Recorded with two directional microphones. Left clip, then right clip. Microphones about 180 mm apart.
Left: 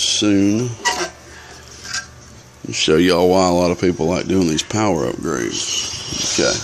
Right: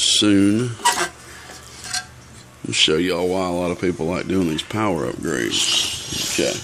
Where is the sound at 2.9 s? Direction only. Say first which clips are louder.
Left 7 dB; 25° left (ahead or behind); by 5.1 s 10° left (ahead or behind).